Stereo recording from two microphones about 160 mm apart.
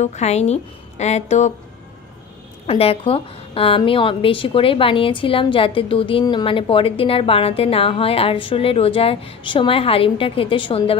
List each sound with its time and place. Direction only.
0.0 s a woman's voice: 45° left (ahead or behind)
2.6 s a woman's voice: 40° left (ahead or behind)